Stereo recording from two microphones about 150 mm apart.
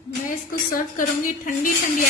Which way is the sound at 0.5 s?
65° left (ahead or behind).